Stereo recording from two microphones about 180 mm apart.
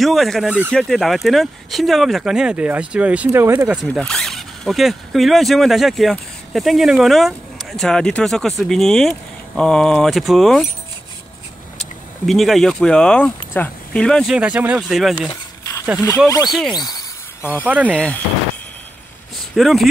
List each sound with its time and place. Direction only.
0.0 s speech: centre (ahead or behind)
3.9 s speech: 5° left (ahead or behind)
12.3 s speech: centre (ahead or behind)
16.3 s speech: 20° left (ahead or behind)
16.7 s a sound: 20° left (ahead or behind)
17.6 s speech: 10° right (ahead or behind)
17.9 s speech: 5° left (ahead or behind)
19.5 s speech: centre (ahead or behind)